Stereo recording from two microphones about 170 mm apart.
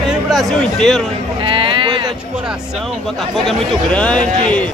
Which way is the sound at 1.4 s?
30° right (ahead or behind).